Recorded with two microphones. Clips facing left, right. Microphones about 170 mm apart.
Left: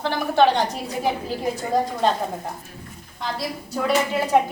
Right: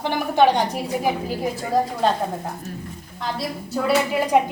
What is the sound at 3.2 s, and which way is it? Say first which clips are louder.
Speech: right 1 dB; centre (ahead or behind).